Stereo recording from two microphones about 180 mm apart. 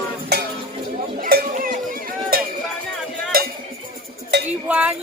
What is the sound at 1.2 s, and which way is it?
Music, 50° right (ahead or behind).